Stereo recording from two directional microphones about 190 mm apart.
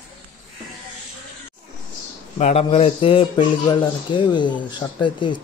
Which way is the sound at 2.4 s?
35° left (ahead or behind).